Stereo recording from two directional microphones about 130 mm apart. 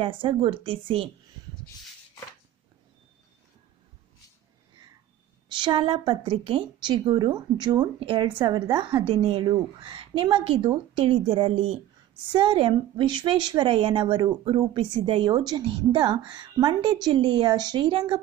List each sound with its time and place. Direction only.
0.0 s a woman's voice: 40° right (ahead or behind)
5.5 s a woman's voice: 40° right (ahead or behind)